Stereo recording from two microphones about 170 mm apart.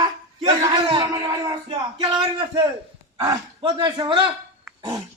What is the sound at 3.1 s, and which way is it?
A man's voice, 20° right (ahead or behind).